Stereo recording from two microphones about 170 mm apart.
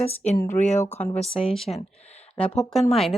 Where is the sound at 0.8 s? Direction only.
10° left (ahead or behind).